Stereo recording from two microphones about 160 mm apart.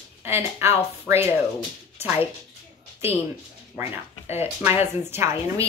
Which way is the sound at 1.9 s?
15° right (ahead or behind).